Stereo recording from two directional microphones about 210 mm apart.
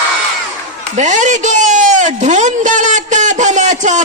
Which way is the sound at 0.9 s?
35° right (ahead or behind).